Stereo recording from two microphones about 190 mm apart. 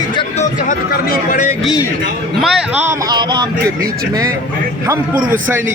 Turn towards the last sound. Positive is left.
turn(degrees=-20)  # may be behind; listen again after turning